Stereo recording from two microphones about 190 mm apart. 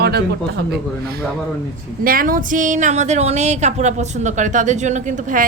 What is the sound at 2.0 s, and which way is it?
Speech, 50° right (ahead or behind).